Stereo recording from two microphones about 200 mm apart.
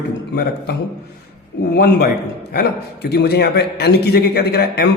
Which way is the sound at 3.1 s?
55° left (ahead or behind).